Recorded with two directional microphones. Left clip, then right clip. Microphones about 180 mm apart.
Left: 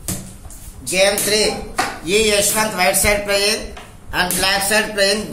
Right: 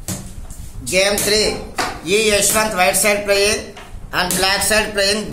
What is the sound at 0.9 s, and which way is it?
Speech, 30° right (ahead or behind).